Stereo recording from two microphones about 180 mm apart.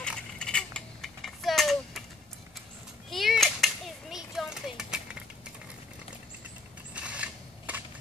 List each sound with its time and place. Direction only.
0.1 s mechanisms: 5° left (ahead or behind)
3.1 s children playing: centre (ahead or behind)
6.9 s a sound: 5° right (ahead or behind)